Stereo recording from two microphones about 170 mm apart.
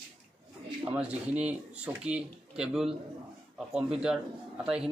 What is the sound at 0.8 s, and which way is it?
Speech, 10° right (ahead or behind).